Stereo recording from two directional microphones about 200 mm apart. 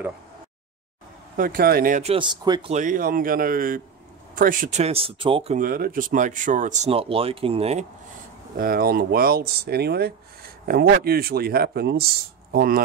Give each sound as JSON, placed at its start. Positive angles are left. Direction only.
{"t": 1.3, "sound": "speech", "side_deg": -45}
{"t": 2.1, "sound": "speech", "side_deg": -20}
{"t": 2.7, "sound": "speech", "side_deg": -40}
{"t": 5.6, "sound": "speech", "side_deg": -45}
{"t": 8.5, "sound": "speech", "side_deg": -45}